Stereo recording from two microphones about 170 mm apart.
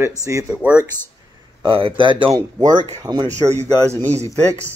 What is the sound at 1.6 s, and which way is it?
Speech, 30° right (ahead or behind).